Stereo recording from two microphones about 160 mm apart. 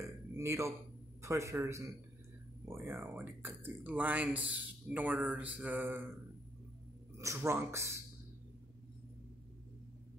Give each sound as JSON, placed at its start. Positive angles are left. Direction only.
{"t": 0.0, "sound": "a sound", "side_deg": -20}
{"t": 1.2, "sound": "speech", "side_deg": -20}
{"t": 7.2, "sound": "speech", "side_deg": -20}